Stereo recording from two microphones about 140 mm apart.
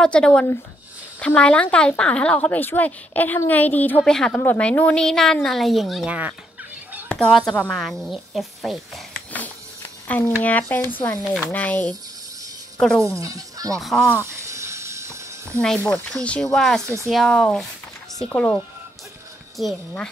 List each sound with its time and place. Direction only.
0.0 s a woman's voice: 5° left (ahead or behind)
10.0 s a woman's voice: 15° left (ahead or behind)
13.2 s speech: 25° right (ahead or behind)
13.7 s speech: centre (ahead or behind)
14.1 s a sound: 20° right (ahead or behind)
15.8 s a woman's voice: 5° left (ahead or behind)
16.8 s speech: 20° right (ahead or behind)
17.1 s a woman's voice: 5° left (ahead or behind)